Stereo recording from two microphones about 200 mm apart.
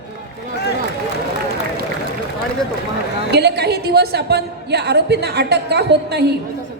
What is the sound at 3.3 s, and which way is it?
A woman's voice, 55° right (ahead or behind).